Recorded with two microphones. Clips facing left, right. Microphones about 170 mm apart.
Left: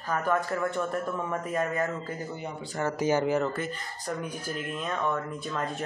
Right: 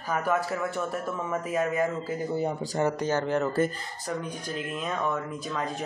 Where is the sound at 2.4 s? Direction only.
40° right (ahead or behind).